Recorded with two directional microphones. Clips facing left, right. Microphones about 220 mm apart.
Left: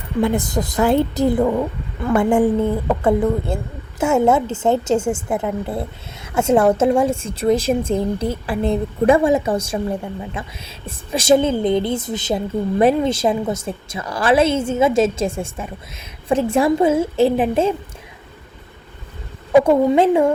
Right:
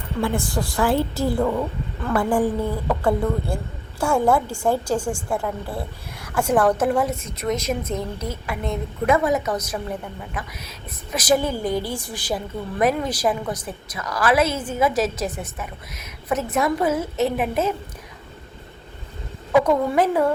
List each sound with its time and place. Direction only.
0.2 s a woman's voice: 20° left (ahead or behind)
4.9 s a woman's voice: 5° left (ahead or behind)
6.2 s a woman's voice: 25° left (ahead or behind)
19.5 s a woman's voice: 25° left (ahead or behind)